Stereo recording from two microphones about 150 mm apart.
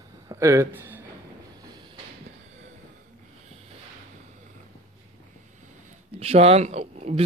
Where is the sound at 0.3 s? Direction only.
20° right (ahead or behind).